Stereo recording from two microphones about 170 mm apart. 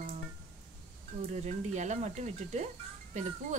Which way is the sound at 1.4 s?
45° right (ahead or behind).